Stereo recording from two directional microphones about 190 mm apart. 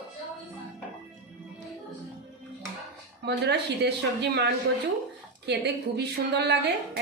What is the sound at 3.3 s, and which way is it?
A woman's voice, 60° right (ahead or behind).